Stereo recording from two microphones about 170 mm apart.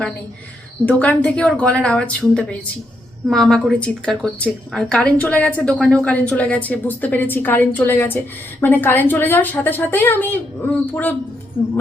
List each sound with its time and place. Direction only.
0.9 s a woman's voice: 10° left (ahead or behind)